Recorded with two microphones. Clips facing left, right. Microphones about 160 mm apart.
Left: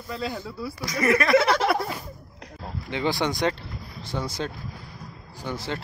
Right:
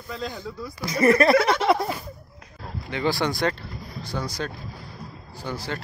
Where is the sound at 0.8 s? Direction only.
30° right (ahead or behind).